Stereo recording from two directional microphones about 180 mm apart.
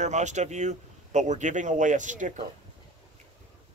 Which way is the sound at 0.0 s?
40° right (ahead or behind).